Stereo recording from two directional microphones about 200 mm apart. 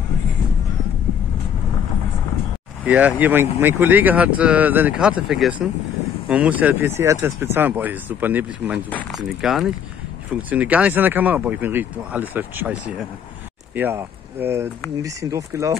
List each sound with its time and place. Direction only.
2.8 s speech: 10° right (ahead or behind)